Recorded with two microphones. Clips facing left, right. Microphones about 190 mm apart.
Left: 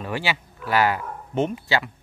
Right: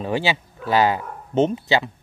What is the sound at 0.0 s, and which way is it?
Speech, 25° right (ahead or behind).